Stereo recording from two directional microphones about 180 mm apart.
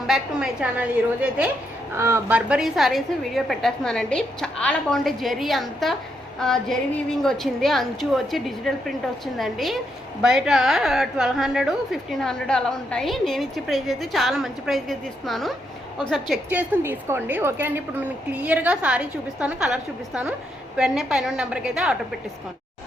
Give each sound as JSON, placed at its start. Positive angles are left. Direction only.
{"t": 0.1, "sound": "a woman's voice", "side_deg": -5}